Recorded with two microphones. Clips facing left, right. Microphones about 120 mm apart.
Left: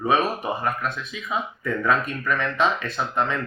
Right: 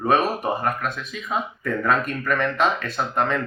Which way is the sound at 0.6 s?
50° right (ahead or behind).